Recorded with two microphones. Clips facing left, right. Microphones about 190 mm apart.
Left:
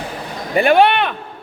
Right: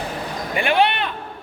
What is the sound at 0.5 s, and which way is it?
Music, 45° left (ahead or behind).